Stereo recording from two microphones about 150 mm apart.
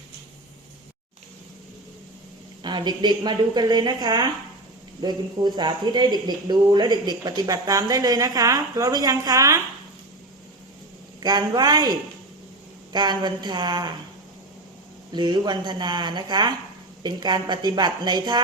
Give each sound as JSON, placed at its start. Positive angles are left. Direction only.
{"t": 2.6, "sound": "speech", "side_deg": -30}
{"t": 11.2, "sound": "speech", "side_deg": -25}
{"t": 15.1, "sound": "speech", "side_deg": -30}